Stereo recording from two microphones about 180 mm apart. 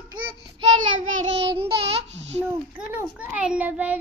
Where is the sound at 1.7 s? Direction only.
70° right (ahead or behind).